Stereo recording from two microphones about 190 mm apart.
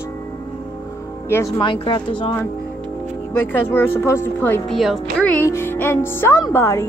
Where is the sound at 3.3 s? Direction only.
10° left (ahead or behind).